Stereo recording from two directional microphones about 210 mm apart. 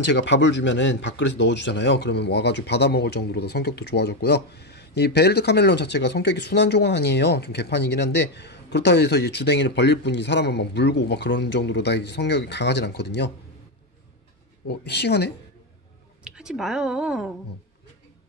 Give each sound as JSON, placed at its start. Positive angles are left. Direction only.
{"t": 0.1, "sound": "speech", "side_deg": 60}
{"t": 14.7, "sound": "speech", "side_deg": 50}
{"t": 16.3, "sound": "speech", "side_deg": -5}